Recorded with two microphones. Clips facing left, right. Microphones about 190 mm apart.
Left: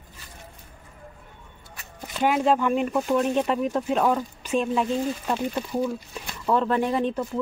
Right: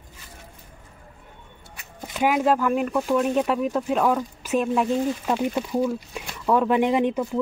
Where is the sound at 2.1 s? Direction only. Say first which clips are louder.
Right 1 dB; 5° right (ahead or behind).